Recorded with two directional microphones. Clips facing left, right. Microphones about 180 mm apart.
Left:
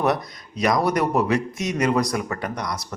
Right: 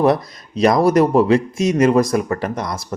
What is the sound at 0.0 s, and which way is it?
Speech, 30° right (ahead or behind).